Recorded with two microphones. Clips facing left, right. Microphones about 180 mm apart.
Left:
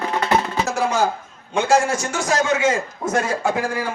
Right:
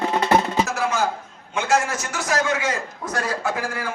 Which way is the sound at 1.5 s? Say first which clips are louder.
Left 4 dB; 30° left (ahead or behind).